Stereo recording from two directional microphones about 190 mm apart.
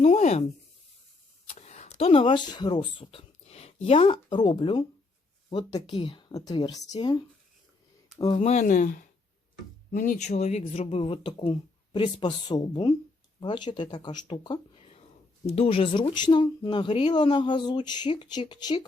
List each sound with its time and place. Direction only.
0.0 s a sound: 35° left (ahead or behind)
1.5 s speech: 35° left (ahead or behind)
8.4 s speech: 40° left (ahead or behind); by 18.9 s 25° left (ahead or behind)